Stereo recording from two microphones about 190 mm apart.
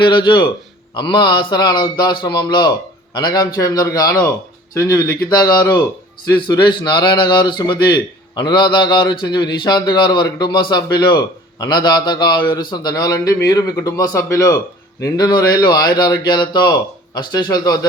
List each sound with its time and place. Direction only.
0.0 s a man's voice: 25° left (ahead or behind)